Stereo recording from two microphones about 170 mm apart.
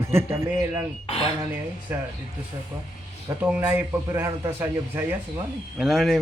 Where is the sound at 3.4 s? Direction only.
10° right (ahead or behind).